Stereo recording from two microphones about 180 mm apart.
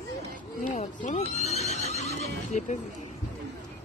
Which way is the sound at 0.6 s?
40° left (ahead or behind).